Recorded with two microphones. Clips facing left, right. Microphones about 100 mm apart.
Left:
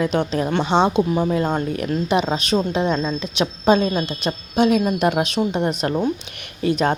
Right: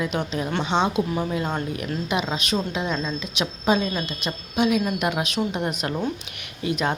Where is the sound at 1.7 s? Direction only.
40° left (ahead or behind); by 6.1 s 25° left (ahead or behind).